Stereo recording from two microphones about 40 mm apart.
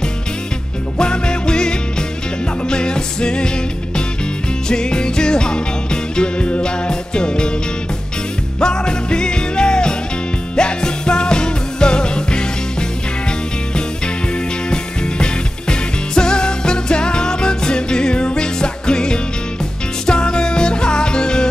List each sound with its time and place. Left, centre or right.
0.9 s music: left
8.5 s music: centre
14.7 s music: left